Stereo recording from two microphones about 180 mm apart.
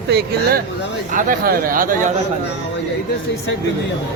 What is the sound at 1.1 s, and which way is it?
Speech, 50° right (ahead or behind).